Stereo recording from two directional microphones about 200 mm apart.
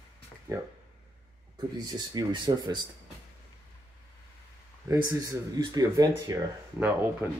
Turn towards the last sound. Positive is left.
turn(degrees=-10)  # may be behind; listen again after turning